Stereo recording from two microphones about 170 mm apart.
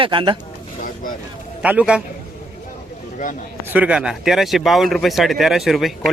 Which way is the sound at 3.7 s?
5° right (ahead or behind).